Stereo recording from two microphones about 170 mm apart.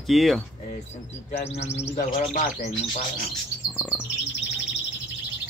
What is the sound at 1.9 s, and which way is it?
Bird, 50° left (ahead or behind).